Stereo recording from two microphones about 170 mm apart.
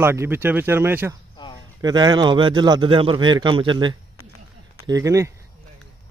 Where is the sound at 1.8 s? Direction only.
25° right (ahead or behind).